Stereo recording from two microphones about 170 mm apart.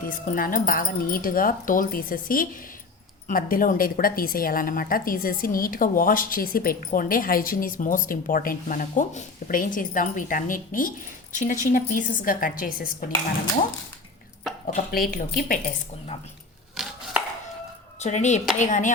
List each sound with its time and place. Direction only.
0.0 s a woman's voice: 55° left (ahead or behind)
14.7 s a woman's voice: 55° left (ahead or behind)
16.8 s chopping: 5° right (ahead or behind)
18.0 s a woman's voice: 45° left (ahead or behind)